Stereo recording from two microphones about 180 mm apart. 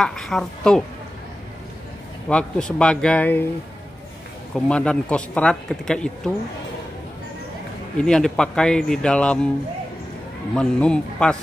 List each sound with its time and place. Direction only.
0.0 s speech: centre (ahead or behind)
2.2 s speech: 5° left (ahead or behind)
4.6 s speech: 5° left (ahead or behind)
8.0 s speech: 5° left (ahead or behind)
10.5 s speech: 5° left (ahead or behind)